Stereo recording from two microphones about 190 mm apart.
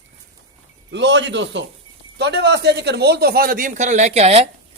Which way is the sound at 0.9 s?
70° right (ahead or behind).